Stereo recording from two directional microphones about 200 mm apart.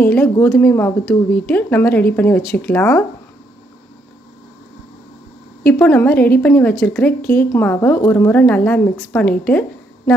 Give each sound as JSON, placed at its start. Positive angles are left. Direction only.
{"t": 0.0, "sound": "a woman's voice", "side_deg": 10}
{"t": 5.7, "sound": "a woman's voice", "side_deg": 10}